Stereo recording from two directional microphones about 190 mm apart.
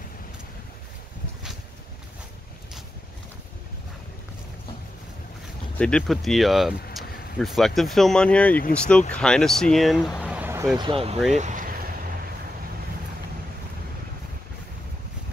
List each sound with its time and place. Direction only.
5.8 s speech: 5° left (ahead or behind); by 10.9 s 15° right (ahead or behind)
10.9 s speech: 30° right (ahead or behind)
11.3 s vehicle: 40° right (ahead or behind)